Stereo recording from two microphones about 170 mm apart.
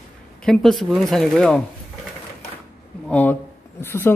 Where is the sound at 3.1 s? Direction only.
10° left (ahead or behind).